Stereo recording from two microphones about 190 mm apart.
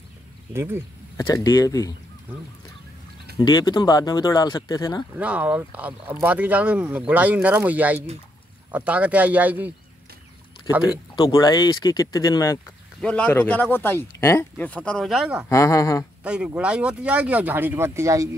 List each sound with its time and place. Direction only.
0.5 s speech: 15° right (ahead or behind)
1.1 s speech: 15° left (ahead or behind)
3.3 s speech: 20° left (ahead or behind)
5.1 s speech: 5° right (ahead or behind)
10.9 s speech: 20° left (ahead or behind)
13.0 s speech: 5° left (ahead or behind)
15.4 s speech: 15° left (ahead or behind)
16.3 s speech: 5° right (ahead or behind)